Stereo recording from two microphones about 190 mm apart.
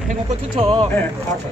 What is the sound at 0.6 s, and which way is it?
Speech, 25° right (ahead or behind).